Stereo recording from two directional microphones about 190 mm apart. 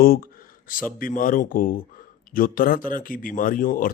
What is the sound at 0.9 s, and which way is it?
A man's voice, 45° left (ahead or behind).